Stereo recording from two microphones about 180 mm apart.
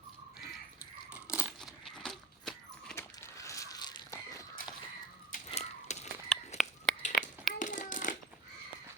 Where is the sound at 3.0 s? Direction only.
15° left (ahead or behind).